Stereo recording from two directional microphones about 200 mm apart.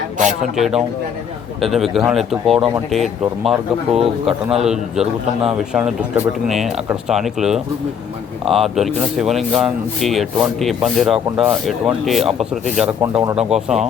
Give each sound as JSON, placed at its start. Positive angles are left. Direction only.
{"t": 0.5, "sound": "speech", "side_deg": 0}